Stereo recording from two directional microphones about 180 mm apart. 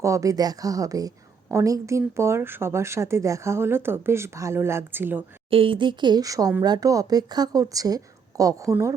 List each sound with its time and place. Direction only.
0.0 s a woman's voice: 15° right (ahead or behind)
5.5 s a woman's voice: 30° right (ahead or behind)